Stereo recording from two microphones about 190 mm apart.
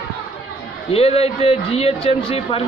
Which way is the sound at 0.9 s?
30° left (ahead or behind).